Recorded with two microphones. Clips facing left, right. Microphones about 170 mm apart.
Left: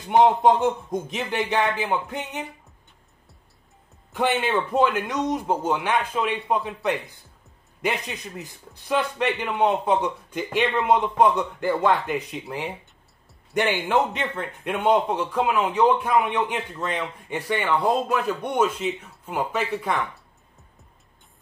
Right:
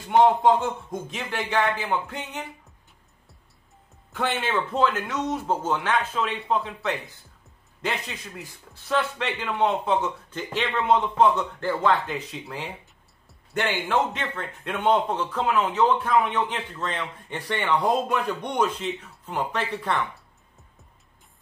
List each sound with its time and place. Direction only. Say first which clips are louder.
0.1 s speech: left 1 dB; 20° left (ahead or behind)
4.1 s a man's voice: left 4 dB; 15° left (ahead or behind)